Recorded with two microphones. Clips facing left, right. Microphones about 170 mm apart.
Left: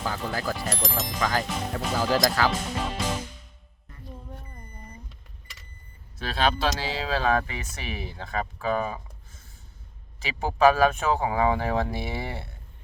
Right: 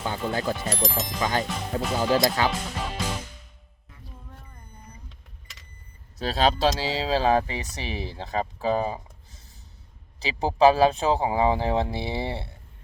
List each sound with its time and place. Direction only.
0.3 s speech: 25° right (ahead or behind)
0.5 s speech: centre (ahead or behind)
1.2 s speech: 25° right (ahead or behind)
2.5 s speech: centre (ahead or behind)
6.1 s speech: 40° right (ahead or behind)